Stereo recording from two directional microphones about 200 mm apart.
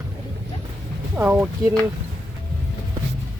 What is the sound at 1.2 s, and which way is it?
Speech, 10° right (ahead or behind).